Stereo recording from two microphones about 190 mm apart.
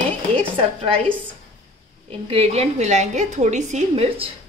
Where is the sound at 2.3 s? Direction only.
30° right (ahead or behind).